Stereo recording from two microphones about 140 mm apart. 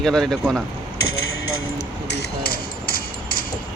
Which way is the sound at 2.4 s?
90° left.